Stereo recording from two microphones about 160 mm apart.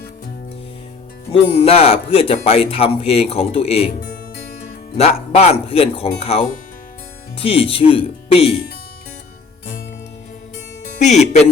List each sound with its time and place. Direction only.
1.3 s speech: 35° left (ahead or behind)
4.0 s music: 75° left (ahead or behind)
4.9 s speech: 40° left (ahead or behind)
11.0 s speech: 45° left (ahead or behind)